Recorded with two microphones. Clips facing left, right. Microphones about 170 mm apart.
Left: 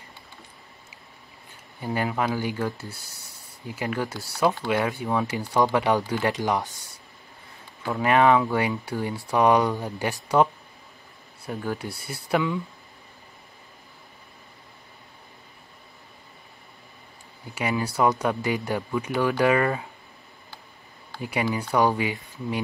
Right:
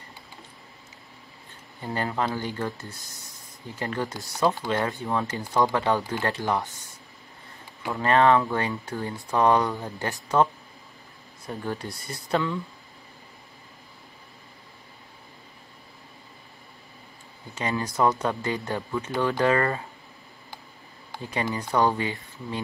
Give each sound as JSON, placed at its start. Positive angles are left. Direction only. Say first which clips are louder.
{"t": 1.8, "sound": "speech", "louder": "left 2 dB", "side_deg": 10}
{"t": 3.0, "sound": "speech", "louder": "right 1 dB", "side_deg": 65}
{"t": 3.6, "sound": "speech", "louder": "left 1 dB", "side_deg": 10}
{"t": 8.0, "sound": "speech", "louder": "left 1 dB", "side_deg": 10}
{"t": 11.4, "sound": "speech", "louder": "left 2 dB", "side_deg": 5}
{"t": 17.6, "sound": "speech", "louder": "left 1 dB", "side_deg": 10}
{"t": 21.2, "sound": "speech", "louder": "left 3 dB", "side_deg": 10}